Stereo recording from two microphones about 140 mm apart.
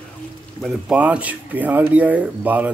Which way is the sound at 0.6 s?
10° right (ahead or behind).